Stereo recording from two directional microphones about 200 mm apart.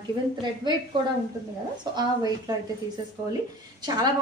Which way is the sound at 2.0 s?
20° right (ahead or behind).